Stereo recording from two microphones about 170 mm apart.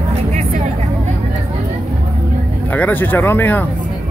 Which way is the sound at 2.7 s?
10° left (ahead or behind).